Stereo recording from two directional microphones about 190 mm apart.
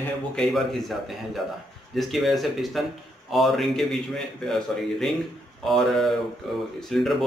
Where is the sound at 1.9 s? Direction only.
Centre (ahead or behind).